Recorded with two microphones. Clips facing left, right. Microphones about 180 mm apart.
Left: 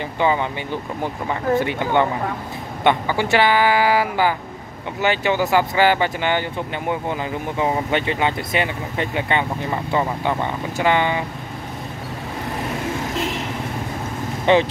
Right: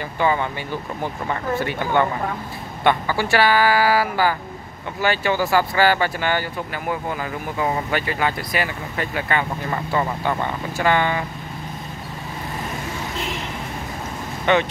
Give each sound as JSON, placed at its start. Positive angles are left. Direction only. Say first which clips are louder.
{"t": 0.2, "sound": "speech", "louder": "left 1 dB", "side_deg": 15}
{"t": 1.5, "sound": "speech", "louder": "left 3 dB", "side_deg": 20}
{"t": 14.4, "sound": "speech", "louder": "left 3 dB", "side_deg": 30}